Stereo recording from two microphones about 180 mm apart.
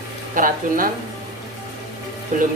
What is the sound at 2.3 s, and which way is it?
Speech, 45° right (ahead or behind).